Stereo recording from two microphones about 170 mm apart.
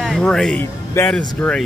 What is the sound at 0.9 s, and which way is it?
Speech, 15° left (ahead or behind).